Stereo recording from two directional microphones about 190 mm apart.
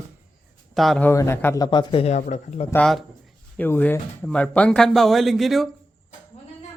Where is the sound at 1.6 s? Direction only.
25° left (ahead or behind).